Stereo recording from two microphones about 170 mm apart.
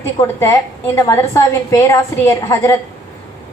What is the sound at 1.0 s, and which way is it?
A woman's voice, 15° left (ahead or behind).